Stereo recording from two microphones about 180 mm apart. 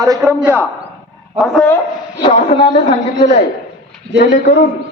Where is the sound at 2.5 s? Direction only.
30° left (ahead or behind).